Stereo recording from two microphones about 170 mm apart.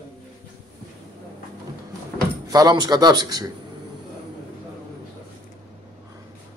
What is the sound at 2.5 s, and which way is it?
A man's voice, 25° right (ahead or behind).